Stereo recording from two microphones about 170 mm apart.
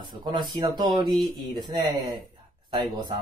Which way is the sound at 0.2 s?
25° right (ahead or behind).